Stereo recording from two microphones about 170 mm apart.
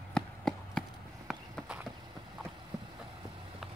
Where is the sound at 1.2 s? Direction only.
5° right (ahead or behind).